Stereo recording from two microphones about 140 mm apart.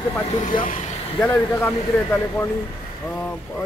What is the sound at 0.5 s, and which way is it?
Speech, 70° left (ahead or behind).